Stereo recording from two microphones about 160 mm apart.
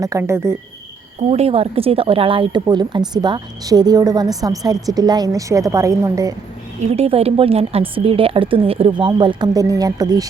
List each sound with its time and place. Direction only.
0.0 s speech: 20° right (ahead or behind)
1.3 s speech: 40° right (ahead or behind); by 6.3 s 20° right (ahead or behind)
6.9 s a woman's voice: 40° right (ahead or behind); by 10.2 s 25° right (ahead or behind)